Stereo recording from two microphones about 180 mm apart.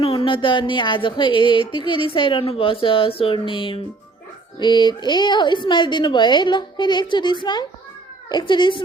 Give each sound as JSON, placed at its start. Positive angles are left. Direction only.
{"t": 0.0, "sound": "a woman's voice", "side_deg": 30}